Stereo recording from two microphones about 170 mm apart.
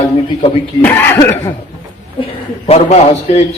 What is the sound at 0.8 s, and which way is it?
Speech, 10° left (ahead or behind).